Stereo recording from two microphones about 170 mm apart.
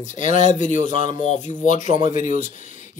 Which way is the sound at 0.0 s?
45° left (ahead or behind).